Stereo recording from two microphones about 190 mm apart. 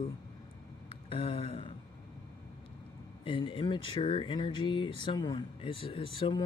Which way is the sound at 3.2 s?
25° left (ahead or behind).